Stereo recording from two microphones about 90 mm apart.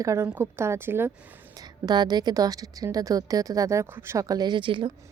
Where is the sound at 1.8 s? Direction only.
50° right (ahead or behind); by 4.2 s 30° right (ahead or behind).